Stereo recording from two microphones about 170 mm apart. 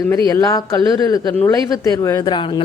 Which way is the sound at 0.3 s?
20° left (ahead or behind).